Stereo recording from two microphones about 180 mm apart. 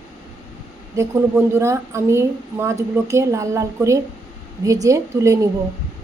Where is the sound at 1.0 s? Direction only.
15° right (ahead or behind).